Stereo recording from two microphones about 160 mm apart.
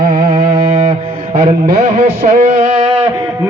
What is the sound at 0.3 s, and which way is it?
Music, 40° right (ahead or behind).